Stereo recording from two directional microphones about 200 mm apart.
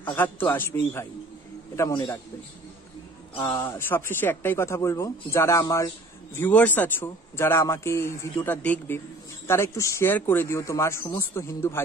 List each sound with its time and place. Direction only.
0.1 s a man's voice: 10° left (ahead or behind)
3.4 s speech: 15° left (ahead or behind)